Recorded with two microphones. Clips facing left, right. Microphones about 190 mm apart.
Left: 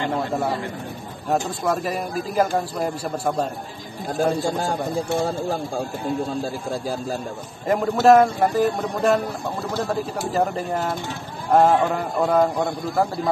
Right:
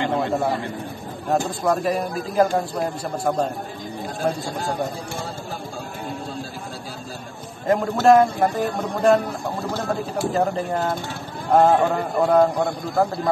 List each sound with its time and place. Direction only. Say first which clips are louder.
1.3 s speech: right 1 dB; centre (ahead or behind)
7.7 s speech: left 1 dB; centre (ahead or behind)
11.5 s speech: right 1 dB; 5° left (ahead or behind)